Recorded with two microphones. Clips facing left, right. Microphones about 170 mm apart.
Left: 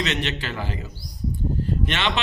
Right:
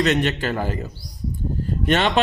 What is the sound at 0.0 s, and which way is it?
A man's voice, 45° right (ahead or behind).